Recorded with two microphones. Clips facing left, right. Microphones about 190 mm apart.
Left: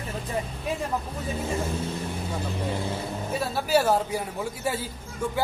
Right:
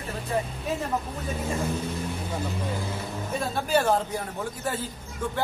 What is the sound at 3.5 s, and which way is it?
A man's voice, 5° left (ahead or behind).